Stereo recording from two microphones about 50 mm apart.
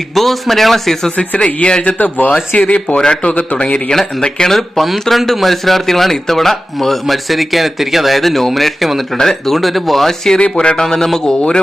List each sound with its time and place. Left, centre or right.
0.1 s speech: centre
1.1 s speech: left
2.0 s speech: left
3.9 s speech: centre
9.1 s speech: centre
10.6 s speech: centre
10.8 s a man's voice: centre